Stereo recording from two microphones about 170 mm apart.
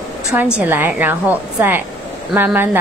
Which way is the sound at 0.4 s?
10° right (ahead or behind).